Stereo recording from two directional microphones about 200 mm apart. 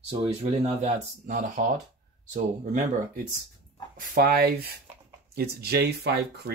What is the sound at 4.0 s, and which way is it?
Speech, 50° right (ahead or behind).